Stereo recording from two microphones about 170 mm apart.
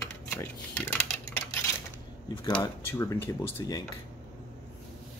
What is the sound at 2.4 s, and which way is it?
Speech, 25° left (ahead or behind).